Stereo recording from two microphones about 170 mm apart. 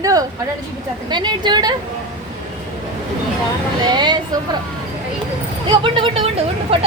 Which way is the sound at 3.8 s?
25° right (ahead or behind).